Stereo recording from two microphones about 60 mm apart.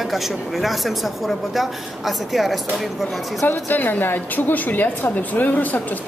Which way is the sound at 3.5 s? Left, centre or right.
Left.